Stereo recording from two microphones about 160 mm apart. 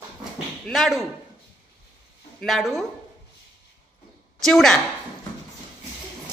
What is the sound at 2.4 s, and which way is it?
Speech, centre (ahead or behind).